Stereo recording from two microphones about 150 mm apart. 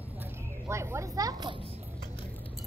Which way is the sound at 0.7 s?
20° right (ahead or behind).